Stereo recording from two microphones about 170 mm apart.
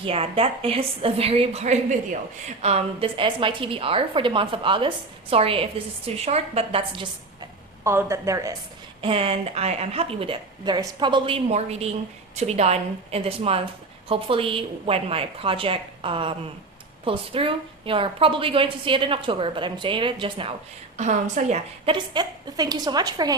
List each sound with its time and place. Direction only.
0.0 s a woman's voice: 35° right (ahead or behind)
7.9 s a woman's voice: 15° right (ahead or behind)
9.0 s a woman's voice: 35° right (ahead or behind)
20.9 s a woman's voice: 45° right (ahead or behind)
21.8 s a woman's voice: 25° right (ahead or behind)